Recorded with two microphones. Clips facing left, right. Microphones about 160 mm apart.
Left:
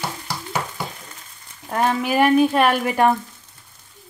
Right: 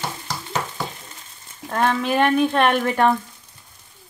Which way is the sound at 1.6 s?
5° left (ahead or behind).